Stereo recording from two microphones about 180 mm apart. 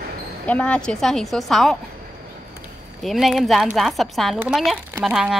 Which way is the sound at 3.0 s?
Centre (ahead or behind).